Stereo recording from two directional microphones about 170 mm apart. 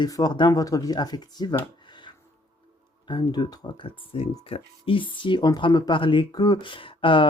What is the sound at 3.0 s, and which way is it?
Speech, 25° left (ahead or behind).